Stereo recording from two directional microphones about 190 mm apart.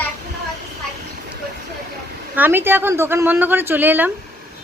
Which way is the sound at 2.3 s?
10° right (ahead or behind).